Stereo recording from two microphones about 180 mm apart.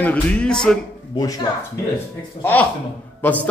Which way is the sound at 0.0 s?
5° left (ahead or behind).